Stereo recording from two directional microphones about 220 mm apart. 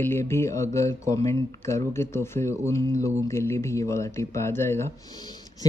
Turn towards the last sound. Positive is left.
turn(degrees=10)  # may be behind; listen again after turning